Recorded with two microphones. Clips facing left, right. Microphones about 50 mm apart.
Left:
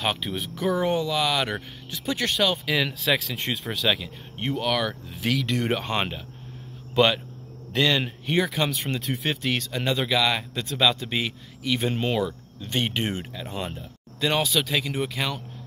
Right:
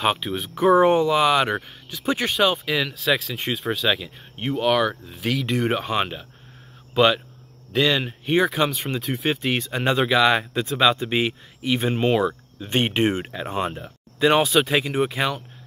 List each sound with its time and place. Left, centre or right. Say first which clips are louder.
0.0 s speech: right 4 dB; centre
0.6 s speech: right 8 dB; right
2.5 s speech: right 1 dB; centre
5.0 s speech: right 1 dB; centre
7.7 s speech: right 2 dB; centre
8.6 s speech: right 2 dB; centre
9.7 s speech: right 7 dB; right